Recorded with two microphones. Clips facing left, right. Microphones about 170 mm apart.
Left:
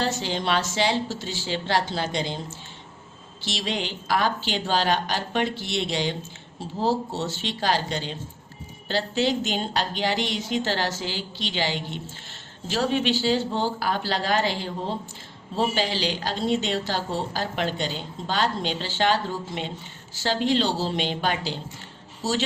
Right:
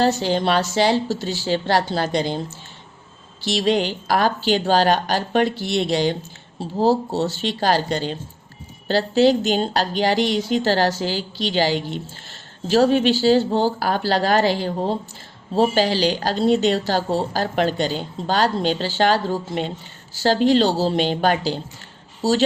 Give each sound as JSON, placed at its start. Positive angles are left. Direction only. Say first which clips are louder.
{"t": 0.0, "sound": "a woman's voice", "louder": "right 8 dB", "side_deg": -40}